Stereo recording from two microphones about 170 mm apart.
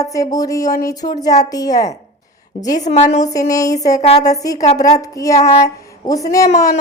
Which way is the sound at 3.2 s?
20° left (ahead or behind).